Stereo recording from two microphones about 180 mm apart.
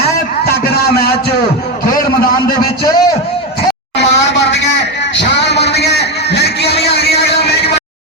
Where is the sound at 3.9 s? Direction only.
75° left (ahead or behind).